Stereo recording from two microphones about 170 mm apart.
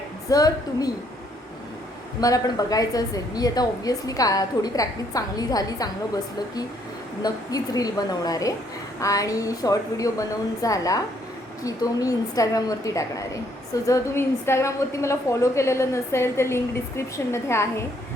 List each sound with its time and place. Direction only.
0.3 s a woman's voice: 20° left (ahead or behind)
2.2 s a woman's voice: 20° left (ahead or behind)
7.2 s a woman's voice: 20° left (ahead or behind)